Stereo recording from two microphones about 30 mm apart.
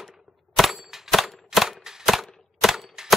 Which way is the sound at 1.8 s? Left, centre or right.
Centre.